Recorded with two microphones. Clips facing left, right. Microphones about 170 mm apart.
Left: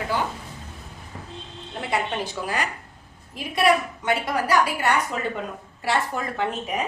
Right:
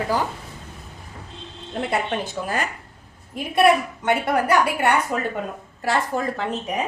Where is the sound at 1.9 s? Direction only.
50° right (ahead or behind).